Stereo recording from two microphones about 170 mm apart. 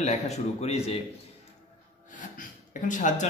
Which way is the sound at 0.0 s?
40° left (ahead or behind).